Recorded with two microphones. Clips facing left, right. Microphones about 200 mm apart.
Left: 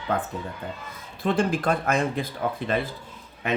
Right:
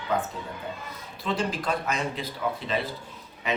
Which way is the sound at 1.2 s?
55° left (ahead or behind).